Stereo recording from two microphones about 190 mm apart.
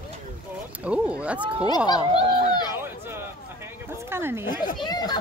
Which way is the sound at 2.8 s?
10° right (ahead or behind).